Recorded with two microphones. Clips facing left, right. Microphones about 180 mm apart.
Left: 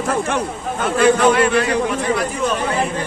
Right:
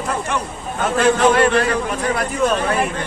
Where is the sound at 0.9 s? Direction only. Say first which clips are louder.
Left 1 dB; 40° right (ahead or behind).